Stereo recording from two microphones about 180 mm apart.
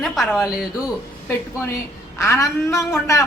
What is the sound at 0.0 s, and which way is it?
Speech, centre (ahead or behind).